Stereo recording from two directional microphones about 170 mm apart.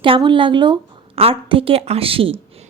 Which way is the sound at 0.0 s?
30° right (ahead or behind).